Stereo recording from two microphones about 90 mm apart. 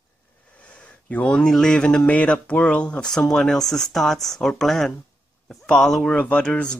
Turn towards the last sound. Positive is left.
turn(degrees=10)  # may be behind; listen again after turning